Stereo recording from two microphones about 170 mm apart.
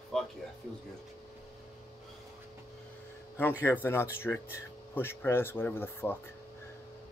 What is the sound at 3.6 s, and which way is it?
Speech, 15° left (ahead or behind).